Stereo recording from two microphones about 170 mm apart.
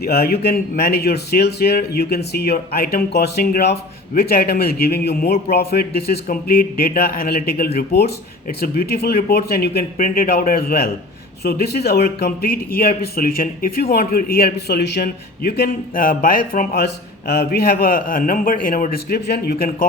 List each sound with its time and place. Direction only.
0.0 s speech: 65° left (ahead or behind)